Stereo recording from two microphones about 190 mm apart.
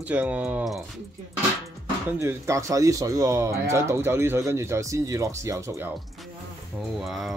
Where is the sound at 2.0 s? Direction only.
15° right (ahead or behind).